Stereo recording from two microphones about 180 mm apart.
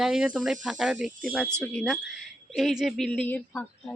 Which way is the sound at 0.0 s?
5° right (ahead or behind).